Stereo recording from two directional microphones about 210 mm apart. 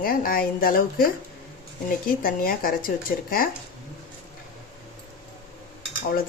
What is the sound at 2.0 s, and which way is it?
Speech, 45° left (ahead or behind).